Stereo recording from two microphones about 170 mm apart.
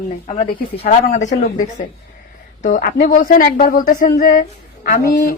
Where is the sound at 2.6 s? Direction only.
50° left (ahead or behind).